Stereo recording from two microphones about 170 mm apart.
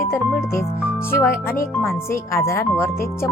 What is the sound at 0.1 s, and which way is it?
Speech, 15° left (ahead or behind).